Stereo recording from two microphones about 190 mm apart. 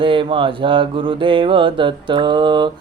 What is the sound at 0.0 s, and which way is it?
Mantra, 25° right (ahead or behind).